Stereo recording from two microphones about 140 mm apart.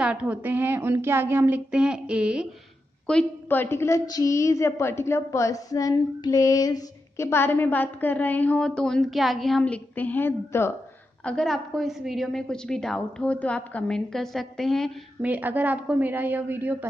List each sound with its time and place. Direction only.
0.0 s a woman's voice: 10° right (ahead or behind)
3.1 s a woman's voice: 10° left (ahead or behind)
11.2 s a woman's voice: 5° left (ahead or behind)
15.2 s a woman's voice: 10° right (ahead or behind)